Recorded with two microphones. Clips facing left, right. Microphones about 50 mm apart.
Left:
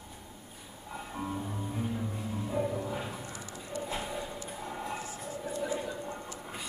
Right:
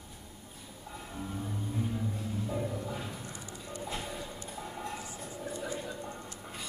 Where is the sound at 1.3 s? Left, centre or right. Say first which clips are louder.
Left 1 dB; centre.